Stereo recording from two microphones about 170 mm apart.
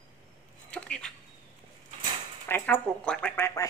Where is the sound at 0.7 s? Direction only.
5° left (ahead or behind).